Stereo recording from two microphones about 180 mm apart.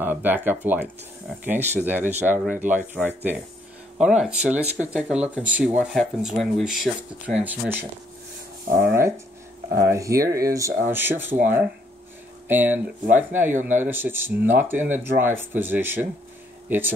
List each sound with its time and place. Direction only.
0.0 s speech: 10° right (ahead or behind)
8.8 s speech: 15° right (ahead or behind)